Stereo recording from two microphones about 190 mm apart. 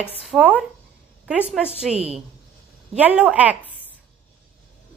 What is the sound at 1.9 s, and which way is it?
Speech, 35° right (ahead or behind).